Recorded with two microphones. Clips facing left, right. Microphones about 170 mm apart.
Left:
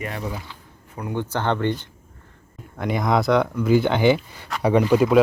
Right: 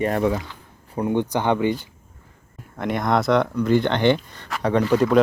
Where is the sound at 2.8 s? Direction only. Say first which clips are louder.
Even; centre (ahead or behind).